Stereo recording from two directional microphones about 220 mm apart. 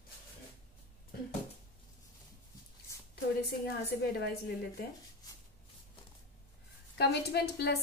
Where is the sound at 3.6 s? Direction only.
45° left (ahead or behind).